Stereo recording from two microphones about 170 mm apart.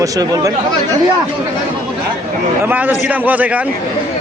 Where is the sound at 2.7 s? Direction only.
10° right (ahead or behind).